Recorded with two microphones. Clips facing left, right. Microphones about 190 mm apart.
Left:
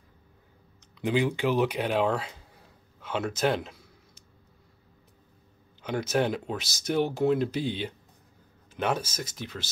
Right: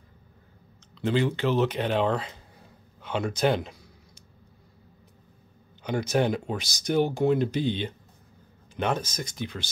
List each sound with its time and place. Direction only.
0.9 s speech: 15° left (ahead or behind)
3.0 s a sound: centre (ahead or behind)
5.8 s speech: centre (ahead or behind)